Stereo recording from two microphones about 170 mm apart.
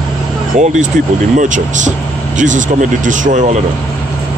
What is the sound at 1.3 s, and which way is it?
Speech, 50° right (ahead or behind).